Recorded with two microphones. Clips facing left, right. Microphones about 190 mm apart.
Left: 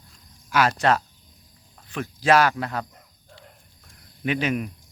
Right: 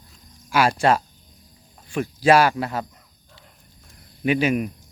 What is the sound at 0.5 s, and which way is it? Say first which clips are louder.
Speech: right 2 dB; 10° right (ahead or behind).